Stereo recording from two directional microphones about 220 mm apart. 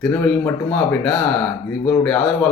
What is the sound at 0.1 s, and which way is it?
Speech, 10° left (ahead or behind).